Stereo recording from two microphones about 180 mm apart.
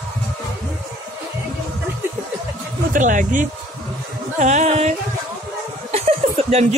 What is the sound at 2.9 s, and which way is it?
Speech, 45° right (ahead or behind).